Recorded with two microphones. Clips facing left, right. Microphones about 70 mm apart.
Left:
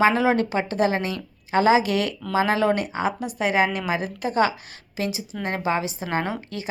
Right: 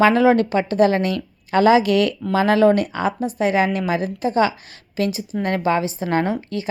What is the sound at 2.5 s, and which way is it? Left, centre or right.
Speech, right.